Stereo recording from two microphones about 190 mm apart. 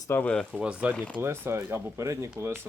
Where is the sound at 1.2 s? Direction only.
15° right (ahead or behind).